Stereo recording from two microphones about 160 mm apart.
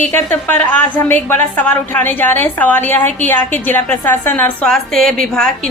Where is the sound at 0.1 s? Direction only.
10° left (ahead or behind).